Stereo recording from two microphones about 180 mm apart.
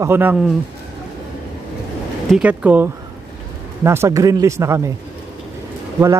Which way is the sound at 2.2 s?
5° right (ahead or behind).